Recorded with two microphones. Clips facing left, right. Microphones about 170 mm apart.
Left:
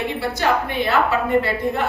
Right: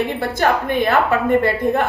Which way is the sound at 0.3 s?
50° right (ahead or behind).